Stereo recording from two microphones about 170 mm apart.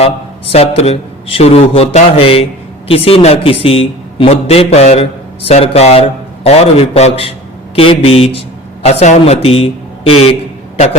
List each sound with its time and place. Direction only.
0.0 s a man's voice: 35° left (ahead or behind)